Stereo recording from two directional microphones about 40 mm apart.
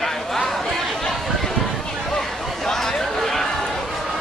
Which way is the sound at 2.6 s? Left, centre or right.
Centre.